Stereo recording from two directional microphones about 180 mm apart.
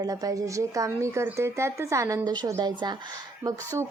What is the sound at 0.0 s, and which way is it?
A woman's voice, 20° right (ahead or behind).